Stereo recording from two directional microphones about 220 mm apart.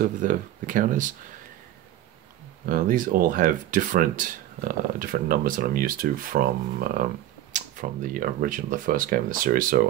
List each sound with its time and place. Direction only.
0.0 s speech: 40° right (ahead or behind)
2.6 s speech: 40° right (ahead or behind)